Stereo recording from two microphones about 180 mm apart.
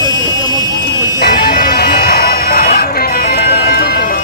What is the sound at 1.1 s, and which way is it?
Music, 60° left (ahead or behind).